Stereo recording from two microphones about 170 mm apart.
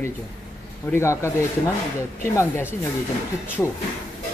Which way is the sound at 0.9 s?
15° left (ahead or behind).